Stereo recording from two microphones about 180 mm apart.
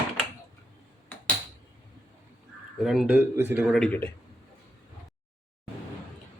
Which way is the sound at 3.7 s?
5° left (ahead or behind).